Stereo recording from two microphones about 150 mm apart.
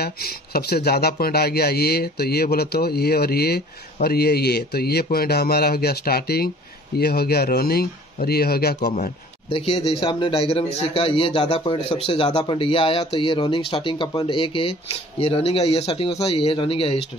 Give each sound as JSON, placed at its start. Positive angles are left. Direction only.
{"t": 0.0, "sound": "speech", "side_deg": 90}
{"t": 9.5, "sound": "speech", "side_deg": 35}